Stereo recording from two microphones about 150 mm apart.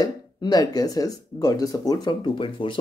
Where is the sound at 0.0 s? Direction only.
25° left (ahead or behind).